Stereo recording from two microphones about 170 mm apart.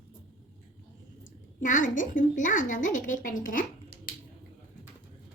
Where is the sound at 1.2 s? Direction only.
50° left (ahead or behind).